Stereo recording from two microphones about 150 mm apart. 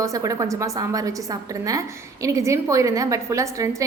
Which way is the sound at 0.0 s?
20° right (ahead or behind).